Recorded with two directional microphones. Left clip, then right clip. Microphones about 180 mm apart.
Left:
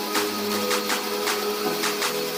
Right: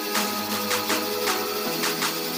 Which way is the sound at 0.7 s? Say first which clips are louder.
Even; centre (ahead or behind).